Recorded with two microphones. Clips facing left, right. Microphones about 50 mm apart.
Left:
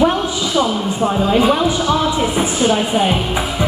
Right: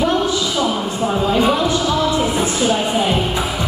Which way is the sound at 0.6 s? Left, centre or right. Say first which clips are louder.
Left 2 dB; centre.